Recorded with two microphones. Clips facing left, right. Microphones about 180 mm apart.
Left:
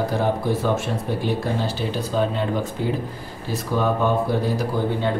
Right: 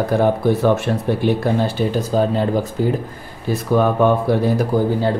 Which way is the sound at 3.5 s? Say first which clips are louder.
Right 6 dB; 60° right (ahead or behind).